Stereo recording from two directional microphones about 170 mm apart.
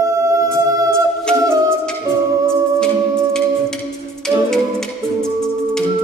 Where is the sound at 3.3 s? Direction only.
5° left (ahead or behind).